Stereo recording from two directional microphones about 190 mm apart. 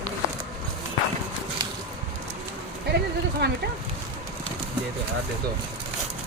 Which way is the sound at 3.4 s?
60° right (ahead or behind).